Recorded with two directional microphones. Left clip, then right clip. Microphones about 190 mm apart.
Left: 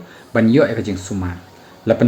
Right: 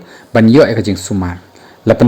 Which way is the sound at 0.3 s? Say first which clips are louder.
Right 6 dB; 45° right (ahead or behind).